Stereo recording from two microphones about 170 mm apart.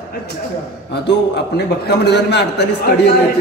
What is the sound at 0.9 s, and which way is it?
A man's voice, 80° left.